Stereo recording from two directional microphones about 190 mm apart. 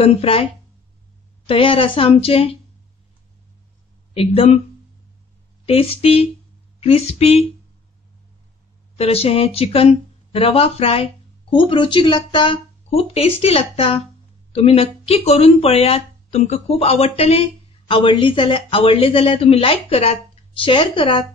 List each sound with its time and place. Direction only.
0.0 s speech: 30° left (ahead or behind)
1.5 s speech: 30° left (ahead or behind)
4.1 s speech: 30° left (ahead or behind)
5.7 s speech: 30° left (ahead or behind)
8.9 s speech: 30° left (ahead or behind)